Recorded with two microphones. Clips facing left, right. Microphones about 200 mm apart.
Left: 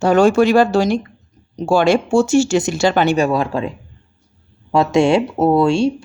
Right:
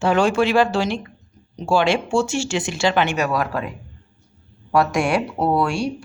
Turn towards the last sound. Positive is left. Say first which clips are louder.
# left 7 dB
turn(degrees=25)  # may be behind; listen again after turning